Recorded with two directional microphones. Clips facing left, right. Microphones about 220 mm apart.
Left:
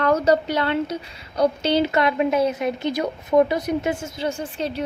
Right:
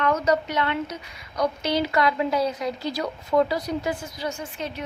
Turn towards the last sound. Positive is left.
turn(degrees=30)  # may be behind; listen again after turning